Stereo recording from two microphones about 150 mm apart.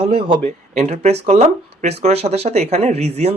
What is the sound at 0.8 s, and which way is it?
Speech, 50° right (ahead or behind).